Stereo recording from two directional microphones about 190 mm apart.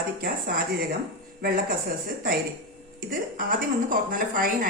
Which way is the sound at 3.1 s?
50° right (ahead or behind).